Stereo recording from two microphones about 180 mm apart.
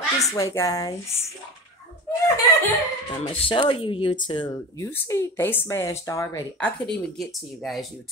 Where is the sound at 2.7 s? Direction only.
35° left (ahead or behind).